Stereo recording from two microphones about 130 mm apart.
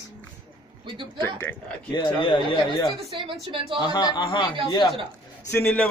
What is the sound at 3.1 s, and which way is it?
Speech, 40° right (ahead or behind).